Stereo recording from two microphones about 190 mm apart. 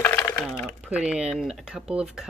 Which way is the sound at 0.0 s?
15° left (ahead or behind).